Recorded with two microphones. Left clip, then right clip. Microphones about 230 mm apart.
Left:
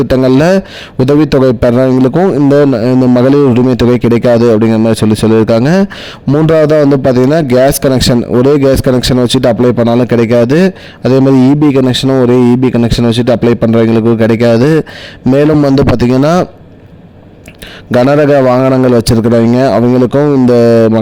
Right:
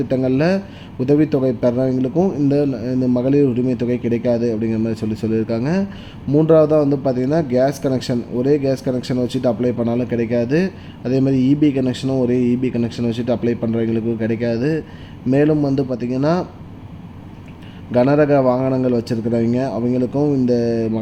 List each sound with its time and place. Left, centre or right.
0.1 s a man's voice: left
17.9 s a man's voice: left